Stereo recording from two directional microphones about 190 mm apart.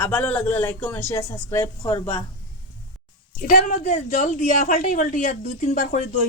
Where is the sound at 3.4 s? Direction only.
45° left (ahead or behind).